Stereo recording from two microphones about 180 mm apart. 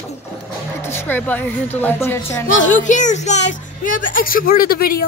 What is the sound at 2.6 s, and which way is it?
A woman's voice, 45° left (ahead or behind).